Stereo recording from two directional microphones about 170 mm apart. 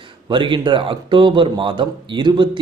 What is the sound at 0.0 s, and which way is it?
Speech, 30° right (ahead or behind).